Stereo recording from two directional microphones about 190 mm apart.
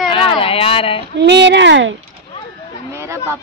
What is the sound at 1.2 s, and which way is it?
Speech, 65° right (ahead or behind).